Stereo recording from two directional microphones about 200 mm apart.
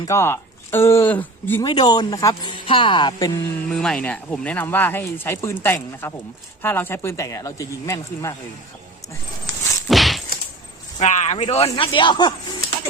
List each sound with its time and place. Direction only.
0.0 s speech: 15° left (ahead or behind)
3.7 s speech: 5° left (ahead or behind)
9.9 s a sound: centre (ahead or behind)
11.0 s speech: 35° left (ahead or behind)